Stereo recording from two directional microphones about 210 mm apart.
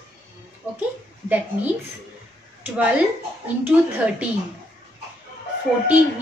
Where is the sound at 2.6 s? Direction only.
5° right (ahead or behind).